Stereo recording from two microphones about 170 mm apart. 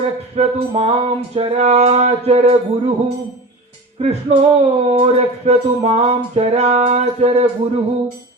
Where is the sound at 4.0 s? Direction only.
40° right (ahead or behind).